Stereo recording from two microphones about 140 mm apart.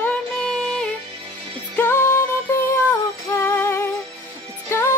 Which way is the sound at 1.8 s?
15° left (ahead or behind).